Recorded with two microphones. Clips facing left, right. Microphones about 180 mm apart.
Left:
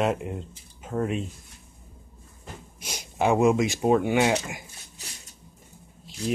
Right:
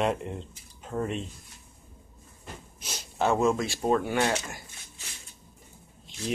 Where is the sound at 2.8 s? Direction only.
15° left (ahead or behind).